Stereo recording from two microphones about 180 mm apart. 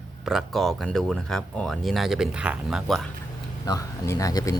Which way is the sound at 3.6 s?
20° left (ahead or behind).